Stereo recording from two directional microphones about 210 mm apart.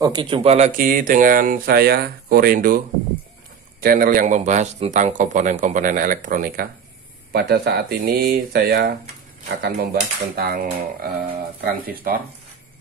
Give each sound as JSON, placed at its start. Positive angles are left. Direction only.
{"t": 0.0, "sound": "a man's voice", "side_deg": -20}
{"t": 3.8, "sound": "a man's voice", "side_deg": -45}